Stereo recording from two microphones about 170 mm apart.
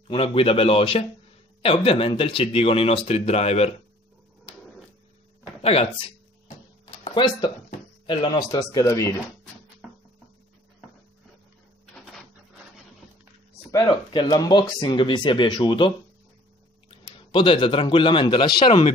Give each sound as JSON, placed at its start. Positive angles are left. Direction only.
{"t": 0.1, "sound": "speech", "side_deg": 30}
{"t": 5.6, "sound": "speech", "side_deg": 35}
{"t": 7.1, "sound": "speech", "side_deg": 25}
{"t": 13.7, "sound": "speech", "side_deg": 25}
{"t": 17.3, "sound": "speech", "side_deg": 25}